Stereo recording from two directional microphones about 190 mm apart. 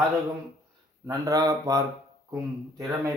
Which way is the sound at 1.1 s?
15° right (ahead or behind).